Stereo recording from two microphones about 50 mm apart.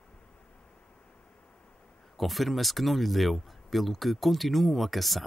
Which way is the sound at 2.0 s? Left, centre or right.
Centre.